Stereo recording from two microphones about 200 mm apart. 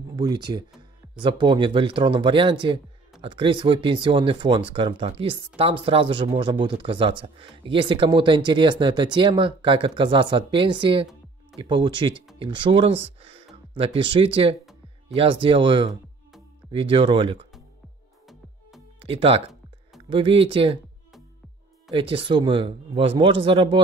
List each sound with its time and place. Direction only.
0.1 s speech: 20° right (ahead or behind)
18.9 s speech: 30° right (ahead or behind)
21.9 s speech: 25° right (ahead or behind)